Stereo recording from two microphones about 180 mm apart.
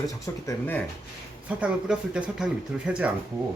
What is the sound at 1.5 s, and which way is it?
Speech, 5° right (ahead or behind).